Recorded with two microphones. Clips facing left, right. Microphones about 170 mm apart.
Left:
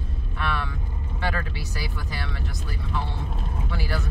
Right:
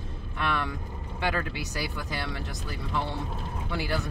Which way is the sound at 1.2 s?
15° right (ahead or behind).